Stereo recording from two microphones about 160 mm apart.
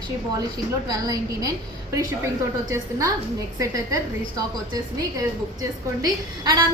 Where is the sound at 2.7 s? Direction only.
20° right (ahead or behind).